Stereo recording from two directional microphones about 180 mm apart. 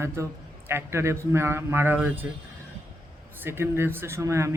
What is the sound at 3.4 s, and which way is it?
Speech, 15° right (ahead or behind).